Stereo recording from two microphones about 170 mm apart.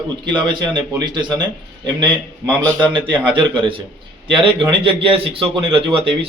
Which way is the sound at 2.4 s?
25° right (ahead or behind).